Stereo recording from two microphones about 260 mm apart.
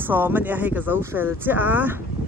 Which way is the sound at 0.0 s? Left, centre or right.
Centre.